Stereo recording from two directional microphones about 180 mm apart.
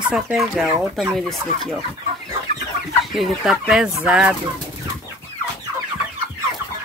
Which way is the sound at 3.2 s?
Centre (ahead or behind).